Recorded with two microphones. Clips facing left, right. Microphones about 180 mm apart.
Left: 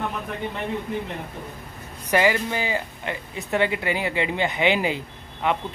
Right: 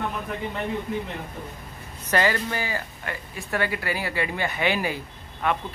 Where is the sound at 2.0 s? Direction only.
15° left (ahead or behind).